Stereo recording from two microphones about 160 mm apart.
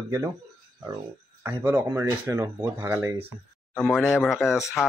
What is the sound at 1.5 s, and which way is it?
Speech, 15° right (ahead or behind).